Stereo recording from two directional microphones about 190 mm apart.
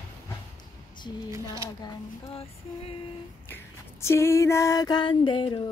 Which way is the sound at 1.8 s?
30° left (ahead or behind).